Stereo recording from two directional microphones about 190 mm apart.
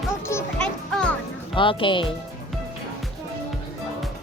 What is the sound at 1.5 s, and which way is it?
Speech, 25° left (ahead or behind).